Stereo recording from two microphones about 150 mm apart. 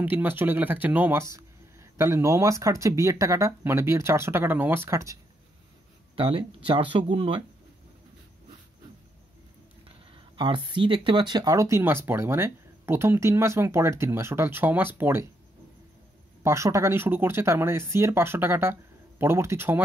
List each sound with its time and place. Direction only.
0.0 s speech: 10° right (ahead or behind)
6.1 s speech: 35° right (ahead or behind)
9.8 s speech: 35° right (ahead or behind); by 15.2 s 15° right (ahead or behind)
16.4 s speech: 20° right (ahead or behind)